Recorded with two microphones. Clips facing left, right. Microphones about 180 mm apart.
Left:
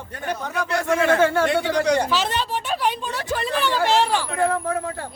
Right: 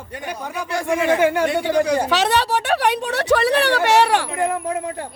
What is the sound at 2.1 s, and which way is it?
Speech, 70° right (ahead or behind).